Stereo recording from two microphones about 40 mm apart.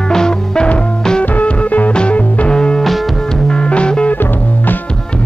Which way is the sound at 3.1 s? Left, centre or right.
Centre.